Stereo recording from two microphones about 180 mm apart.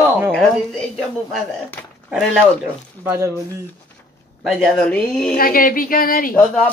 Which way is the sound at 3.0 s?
15° right (ahead or behind).